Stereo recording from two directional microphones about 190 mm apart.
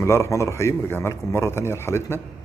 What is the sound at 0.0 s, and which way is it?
Speech, 15° left (ahead or behind).